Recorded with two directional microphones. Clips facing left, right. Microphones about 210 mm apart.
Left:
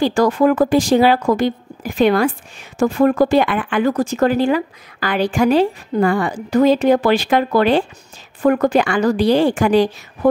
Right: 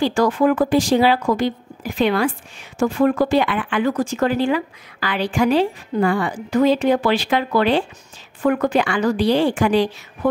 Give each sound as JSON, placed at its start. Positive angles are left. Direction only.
{"t": 0.0, "sound": "speech", "side_deg": 40}